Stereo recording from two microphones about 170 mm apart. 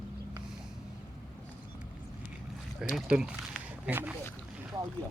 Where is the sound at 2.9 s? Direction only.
5° right (ahead or behind).